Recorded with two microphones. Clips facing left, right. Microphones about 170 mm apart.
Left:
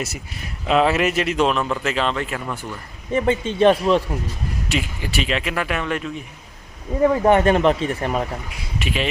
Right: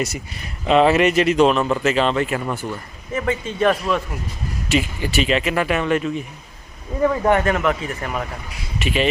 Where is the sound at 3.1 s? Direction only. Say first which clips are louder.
Left 3 dB; 30° left (ahead or behind).